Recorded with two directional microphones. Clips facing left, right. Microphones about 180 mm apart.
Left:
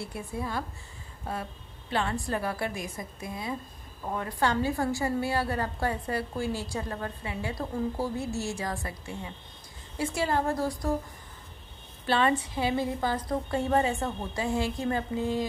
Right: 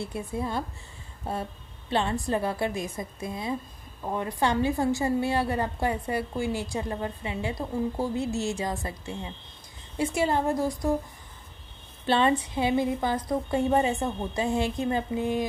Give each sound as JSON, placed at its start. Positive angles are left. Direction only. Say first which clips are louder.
{"t": 0.0, "sound": "a woman's voice", "louder": "right 3 dB", "side_deg": -20}
{"t": 1.9, "sound": "a woman's voice", "louder": "right 3 dB", "side_deg": -25}
{"t": 12.1, "sound": "a woman's voice", "louder": "right 2 dB", "side_deg": -25}